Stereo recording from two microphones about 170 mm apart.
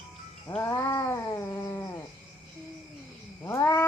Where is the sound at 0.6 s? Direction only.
20° left (ahead or behind).